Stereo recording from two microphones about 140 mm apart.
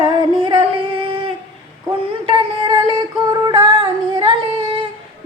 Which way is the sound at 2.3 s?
35° right (ahead or behind).